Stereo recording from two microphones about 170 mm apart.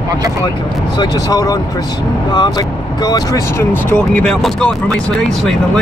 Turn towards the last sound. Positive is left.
turn(degrees=5)  # may be behind; listen again after turning